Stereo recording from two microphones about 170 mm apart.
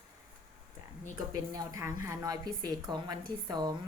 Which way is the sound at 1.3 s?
20° right (ahead or behind).